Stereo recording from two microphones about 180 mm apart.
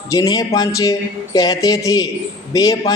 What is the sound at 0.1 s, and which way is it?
Speech, 20° left (ahead or behind).